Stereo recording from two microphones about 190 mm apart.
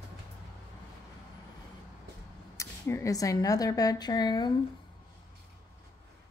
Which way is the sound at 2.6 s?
15° left (ahead or behind).